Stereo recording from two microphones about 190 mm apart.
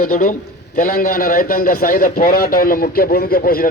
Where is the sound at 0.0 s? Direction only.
45° left (ahead or behind).